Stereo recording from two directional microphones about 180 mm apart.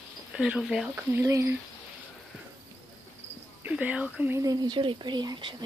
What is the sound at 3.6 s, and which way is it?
Speech, 10° right (ahead or behind).